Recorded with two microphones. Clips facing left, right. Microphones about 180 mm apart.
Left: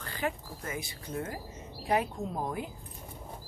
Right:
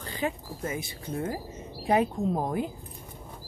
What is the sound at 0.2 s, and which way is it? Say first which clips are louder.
Speech: right 4 dB; 20° right (ahead or behind).